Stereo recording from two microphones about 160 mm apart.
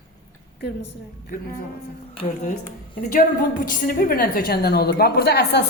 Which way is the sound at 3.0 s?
60° left (ahead or behind).